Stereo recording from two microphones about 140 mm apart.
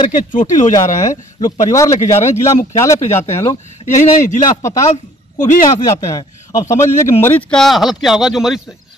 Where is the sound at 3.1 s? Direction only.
50° left (ahead or behind).